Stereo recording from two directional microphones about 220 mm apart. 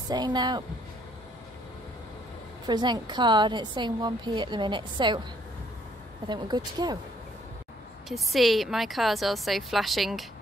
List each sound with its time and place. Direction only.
0.1 s a woman's voice: 20° right (ahead or behind)
2.6 s a woman's voice: 20° right (ahead or behind)
6.2 s a woman's voice: 20° right (ahead or behind)
8.1 s a woman's voice: centre (ahead or behind)